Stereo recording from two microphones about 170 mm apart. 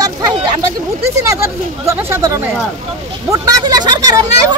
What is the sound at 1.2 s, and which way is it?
Speech, 20° right (ahead or behind).